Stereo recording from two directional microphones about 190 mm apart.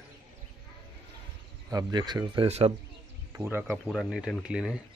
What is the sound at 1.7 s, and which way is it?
Speech, 20° right (ahead or behind).